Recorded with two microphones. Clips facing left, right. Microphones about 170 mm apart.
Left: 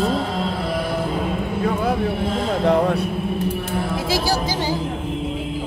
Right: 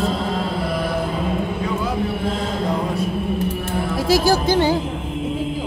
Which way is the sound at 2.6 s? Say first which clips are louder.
Left 7 dB; 65° left (ahead or behind).